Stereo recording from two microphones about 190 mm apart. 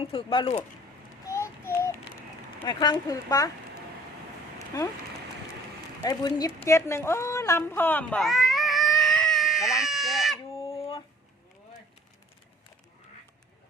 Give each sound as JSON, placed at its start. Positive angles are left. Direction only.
{"t": 0.0, "sound": "speech", "side_deg": 30}
{"t": 1.3, "sound": "child singing", "side_deg": 15}
{"t": 2.6, "sound": "speech", "side_deg": 20}
{"t": 6.0, "sound": "speech", "side_deg": 20}
{"t": 6.7, "sound": "cat", "side_deg": 15}
{"t": 10.3, "sound": "owl", "side_deg": 30}